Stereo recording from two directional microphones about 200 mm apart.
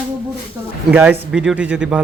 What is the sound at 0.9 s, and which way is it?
Speech, 5° right (ahead or behind).